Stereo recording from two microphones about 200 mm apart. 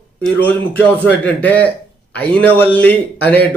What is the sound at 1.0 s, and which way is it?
Speech, 5° left (ahead or behind).